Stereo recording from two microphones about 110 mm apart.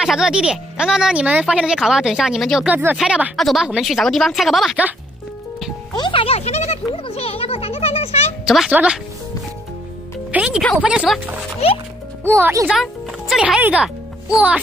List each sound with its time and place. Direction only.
0.0 s speech: 5° right (ahead or behind)
2.7 s speech: 15° right (ahead or behind)
3.3 s speech: centre (ahead or behind)
5.9 s a child's voice: 45° left (ahead or behind)
6.2 s speech: 75° left (ahead or behind)
7.1 s a child's voice: 65° left (ahead or behind)
8.5 s speech: 5° right (ahead or behind)
10.3 s music: 5° right (ahead or behind)
10.8 s speech: 10° right (ahead or behind)
12.3 s speech: 20° right (ahead or behind)
12.7 s speech: centre (ahead or behind)